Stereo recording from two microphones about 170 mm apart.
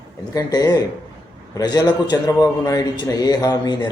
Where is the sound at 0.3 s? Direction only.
20° left (ahead or behind).